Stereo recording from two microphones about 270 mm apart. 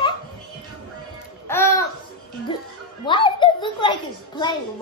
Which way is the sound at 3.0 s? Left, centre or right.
Centre.